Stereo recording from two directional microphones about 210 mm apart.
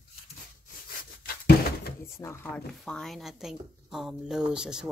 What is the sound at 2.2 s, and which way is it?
A woman's voice, 10° left (ahead or behind).